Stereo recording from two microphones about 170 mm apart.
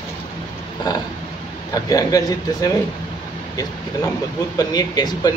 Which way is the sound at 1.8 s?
20° left (ahead or behind).